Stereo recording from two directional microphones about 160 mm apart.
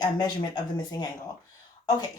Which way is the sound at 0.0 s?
25° left (ahead or behind).